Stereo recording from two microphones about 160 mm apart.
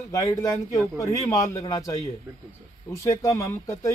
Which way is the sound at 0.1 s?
20° left (ahead or behind).